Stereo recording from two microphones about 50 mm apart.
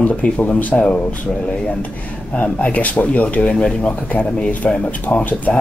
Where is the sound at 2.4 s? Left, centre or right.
Left.